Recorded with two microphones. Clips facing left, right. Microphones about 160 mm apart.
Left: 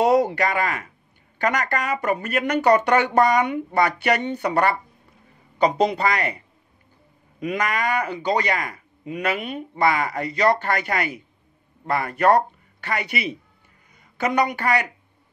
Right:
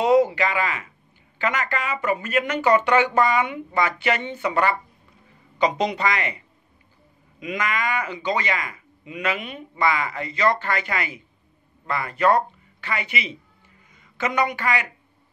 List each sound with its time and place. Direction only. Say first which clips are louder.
0.5 s a woman's voice: left 2 dB; 55° left (ahead or behind)
1.4 s a man's voice: left 2 dB; 40° left (ahead or behind)
2.0 s a woman's voice: left 1 dB; 55° left (ahead or behind)
2.4 s a man's voice: left 4 dB; 40° left (ahead or behind)
5.9 s a man's voice: left 2 dB; 40° left (ahead or behind)
7.5 s a man's voice: left 2 dB; 40° left (ahead or behind)
14.2 s a man's voice: left 2 dB; 35° left (ahead or behind)
14.5 s a woman's voice: left 3 dB; 50° left (ahead or behind)